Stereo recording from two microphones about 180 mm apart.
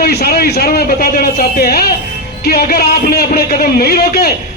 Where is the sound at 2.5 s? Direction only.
60° left (ahead or behind).